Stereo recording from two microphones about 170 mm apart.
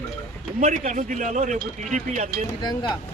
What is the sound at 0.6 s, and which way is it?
Speech, 45° right (ahead or behind).